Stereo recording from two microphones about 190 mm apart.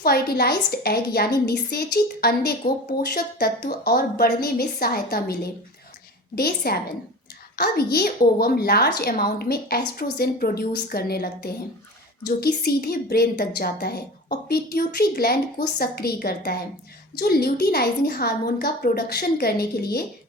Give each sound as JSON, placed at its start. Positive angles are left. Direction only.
{"t": 0.0, "sound": "a woman's voice", "side_deg": 55}